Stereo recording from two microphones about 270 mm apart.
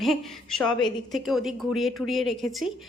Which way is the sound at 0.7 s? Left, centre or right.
Centre.